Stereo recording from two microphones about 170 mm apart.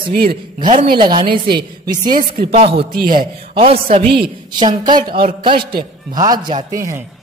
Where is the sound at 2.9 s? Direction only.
60° right (ahead or behind).